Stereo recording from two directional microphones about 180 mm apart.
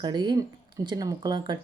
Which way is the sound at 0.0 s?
25° right (ahead or behind).